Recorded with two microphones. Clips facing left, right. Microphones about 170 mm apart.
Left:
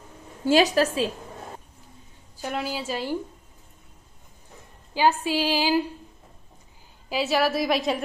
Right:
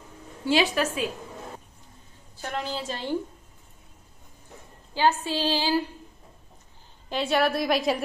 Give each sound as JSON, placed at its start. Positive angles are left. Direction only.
{"t": 0.5, "sound": "a woman's voice", "side_deg": 40}
{"t": 2.5, "sound": "a woman's voice", "side_deg": 5}
{"t": 4.9, "sound": "a woman's voice", "side_deg": 10}
{"t": 7.1, "sound": "a woman's voice", "side_deg": 5}